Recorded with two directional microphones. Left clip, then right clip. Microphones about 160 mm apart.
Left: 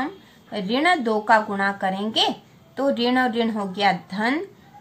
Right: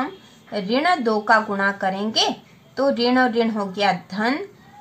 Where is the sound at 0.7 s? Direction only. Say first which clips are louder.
Right 1 dB; 30° right (ahead or behind).